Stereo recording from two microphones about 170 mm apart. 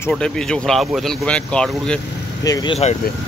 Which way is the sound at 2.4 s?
20° left (ahead or behind).